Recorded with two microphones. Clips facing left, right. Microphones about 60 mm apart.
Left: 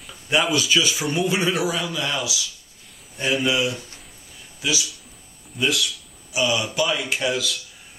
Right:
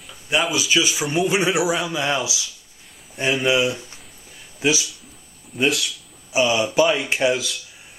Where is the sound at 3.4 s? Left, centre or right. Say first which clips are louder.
Right 3 dB; right.